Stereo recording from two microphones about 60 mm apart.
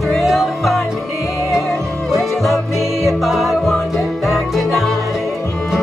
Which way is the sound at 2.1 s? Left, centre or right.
Centre.